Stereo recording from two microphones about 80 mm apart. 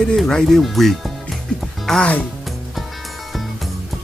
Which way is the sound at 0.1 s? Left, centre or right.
Centre.